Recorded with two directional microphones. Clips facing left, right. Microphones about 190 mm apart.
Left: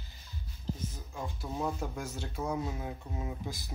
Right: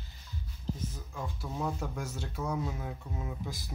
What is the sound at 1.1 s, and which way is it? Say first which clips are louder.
Speech: left 1 dB; 20° left (ahead or behind).